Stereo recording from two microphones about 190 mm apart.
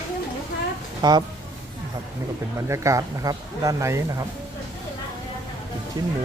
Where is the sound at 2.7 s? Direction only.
15° right (ahead or behind).